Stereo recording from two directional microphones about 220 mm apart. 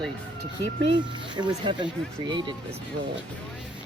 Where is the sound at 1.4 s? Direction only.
20° right (ahead or behind).